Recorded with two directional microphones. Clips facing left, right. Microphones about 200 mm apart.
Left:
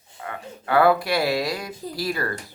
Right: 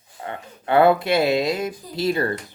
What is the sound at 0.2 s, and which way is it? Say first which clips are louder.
Speech: right 2 dB; 25° right (ahead or behind).